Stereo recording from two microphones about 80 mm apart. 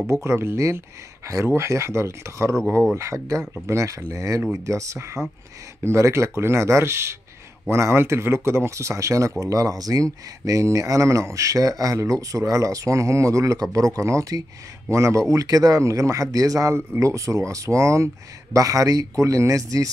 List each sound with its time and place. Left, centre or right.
0.0 s speech: right